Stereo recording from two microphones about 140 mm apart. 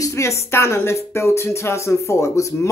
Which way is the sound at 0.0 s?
20° left (ahead or behind).